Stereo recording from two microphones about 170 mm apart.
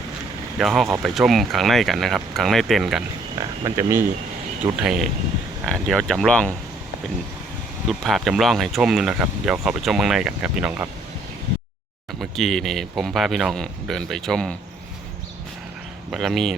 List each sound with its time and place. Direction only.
0.6 s speech: centre (ahead or behind)
3.6 s speech: 15° right (ahead or behind)
4.8 s speech: 5° right (ahead or behind)
7.9 s speech: centre (ahead or behind)
12.2 s speech: centre (ahead or behind)
16.1 s speech: centre (ahead or behind)